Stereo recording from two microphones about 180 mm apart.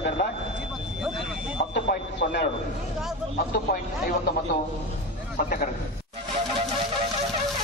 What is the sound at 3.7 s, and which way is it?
Speech, 60° left (ahead or behind).